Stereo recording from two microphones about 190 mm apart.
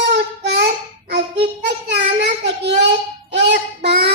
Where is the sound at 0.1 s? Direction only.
65° right (ahead or behind).